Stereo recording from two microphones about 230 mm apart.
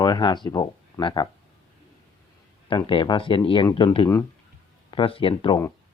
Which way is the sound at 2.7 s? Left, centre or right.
Left.